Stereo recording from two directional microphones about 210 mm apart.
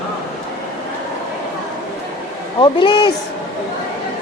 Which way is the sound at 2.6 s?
20° left (ahead or behind).